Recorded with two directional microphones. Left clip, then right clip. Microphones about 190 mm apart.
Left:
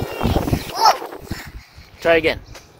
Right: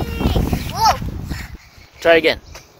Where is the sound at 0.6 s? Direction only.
Centre (ahead or behind).